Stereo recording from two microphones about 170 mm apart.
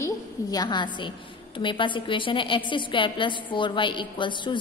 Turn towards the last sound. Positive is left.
turn(degrees=30)  # may be behind; listen again after turning